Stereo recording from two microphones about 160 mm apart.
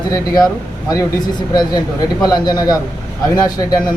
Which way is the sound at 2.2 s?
25° left (ahead or behind).